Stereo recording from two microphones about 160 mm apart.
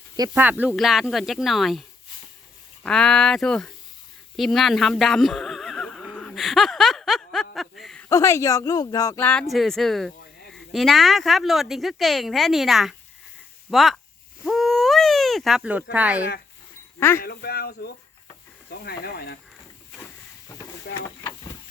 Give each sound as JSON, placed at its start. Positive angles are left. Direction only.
{"t": 0.3, "sound": "speech", "side_deg": -10}
{"t": 2.8, "sound": "speech", "side_deg": 5}
{"t": 4.4, "sound": "neigh", "side_deg": 0}
{"t": 8.1, "sound": "speech", "side_deg": 20}
{"t": 14.4, "sound": "owl", "side_deg": 0}
{"t": 17.2, "sound": "speech", "side_deg": 75}
{"t": 20.5, "sound": "a sound", "side_deg": 25}
{"t": 20.9, "sound": "vehicle", "side_deg": 20}